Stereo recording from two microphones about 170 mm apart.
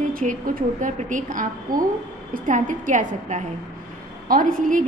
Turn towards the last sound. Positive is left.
turn(degrees=-55)  # may be behind; listen again after turning